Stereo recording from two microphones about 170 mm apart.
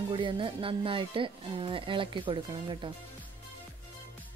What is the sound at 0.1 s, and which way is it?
Speech, 30° right (ahead or behind).